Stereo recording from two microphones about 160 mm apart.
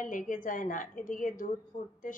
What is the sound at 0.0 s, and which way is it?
A woman's voice, 55° left (ahead or behind).